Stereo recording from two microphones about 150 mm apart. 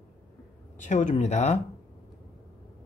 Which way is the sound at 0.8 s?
55° left (ahead or behind).